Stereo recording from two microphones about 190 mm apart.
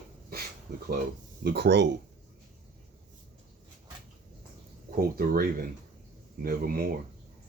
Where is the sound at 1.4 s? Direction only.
60° right (ahead or behind).